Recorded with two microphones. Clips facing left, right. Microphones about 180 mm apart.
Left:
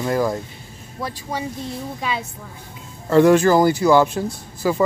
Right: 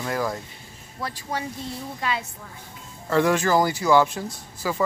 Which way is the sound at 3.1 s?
35° left (ahead or behind).